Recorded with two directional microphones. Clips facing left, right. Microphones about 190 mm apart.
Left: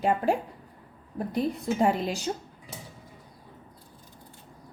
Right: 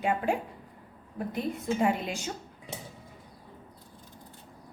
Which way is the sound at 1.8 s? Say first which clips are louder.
Left 4 dB; 40° left (ahead or behind).